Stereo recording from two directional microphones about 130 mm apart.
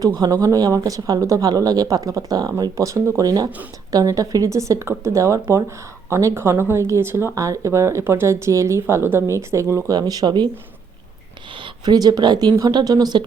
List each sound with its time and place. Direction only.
0.2 s speech: 25° right (ahead or behind)
10.0 s speech: 30° right (ahead or behind)
11.6 s speech: 30° right (ahead or behind)